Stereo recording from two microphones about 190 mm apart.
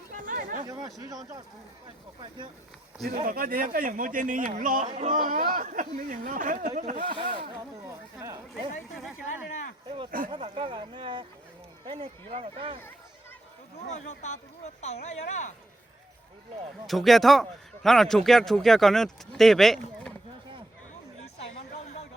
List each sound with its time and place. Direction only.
0.2 s chatter: 45° right (ahead or behind)
0.6 s speech: 20° right (ahead or behind)
3.2 s a man's voice: 50° right (ahead or behind)
6.9 s speech: 25° right (ahead or behind)
7.9 s speech: 15° right (ahead or behind)
10.1 s a man's voice: 45° right (ahead or behind)
10.3 s speech: 30° right (ahead or behind)
13.8 s speech: 40° left (ahead or behind)
16.8 s speech: centre (ahead or behind)
21.8 s a sound: 35° left (ahead or behind)